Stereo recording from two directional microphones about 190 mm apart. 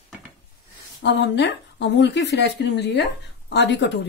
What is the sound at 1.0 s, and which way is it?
Speech, 65° left (ahead or behind).